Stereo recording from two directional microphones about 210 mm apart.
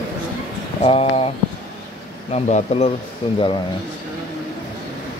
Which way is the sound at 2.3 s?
30° left (ahead or behind).